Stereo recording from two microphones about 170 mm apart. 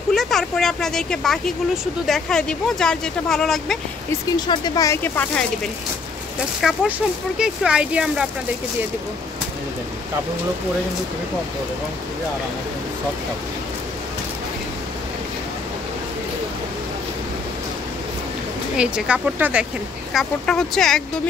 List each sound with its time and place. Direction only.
0.1 s speech: centre (ahead or behind)
4.5 s speech: 20° left (ahead or behind)
6.6 s speech: centre (ahead or behind)
18.8 s speech: 5° right (ahead or behind)